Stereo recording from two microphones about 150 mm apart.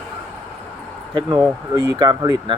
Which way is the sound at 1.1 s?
30° right (ahead or behind).